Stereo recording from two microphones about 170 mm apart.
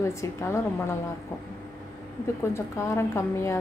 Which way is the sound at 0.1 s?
15° left (ahead or behind).